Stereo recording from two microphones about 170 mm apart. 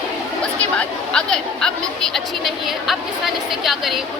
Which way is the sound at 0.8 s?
5° left (ahead or behind).